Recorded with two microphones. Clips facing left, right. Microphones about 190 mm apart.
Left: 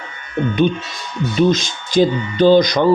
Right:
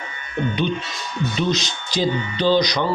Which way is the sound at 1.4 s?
50° left (ahead or behind).